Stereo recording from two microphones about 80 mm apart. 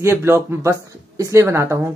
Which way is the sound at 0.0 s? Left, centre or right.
Right.